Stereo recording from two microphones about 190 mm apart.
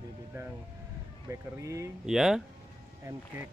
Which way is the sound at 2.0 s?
Centre (ahead or behind).